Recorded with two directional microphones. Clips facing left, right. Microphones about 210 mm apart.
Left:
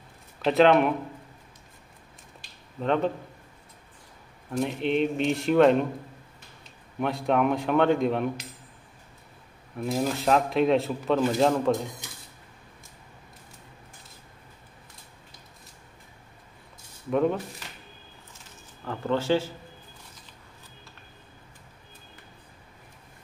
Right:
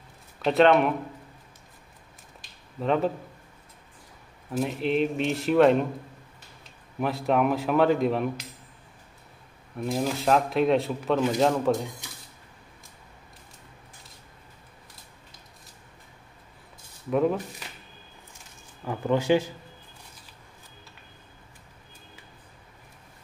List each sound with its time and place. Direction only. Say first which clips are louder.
0.4 s speech: even; centre (ahead or behind)
2.8 s speech: even; 5° right (ahead or behind)
4.5 s speech: even; centre (ahead or behind)
7.0 s speech: even; centre (ahead or behind)
9.8 s speech: even; centre (ahead or behind)
17.1 s speech: even; centre (ahead or behind)
18.9 s speech: right 2 dB; 15° right (ahead or behind)